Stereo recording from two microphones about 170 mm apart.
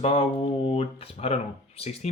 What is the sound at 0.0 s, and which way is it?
Speech, 30° left (ahead or behind).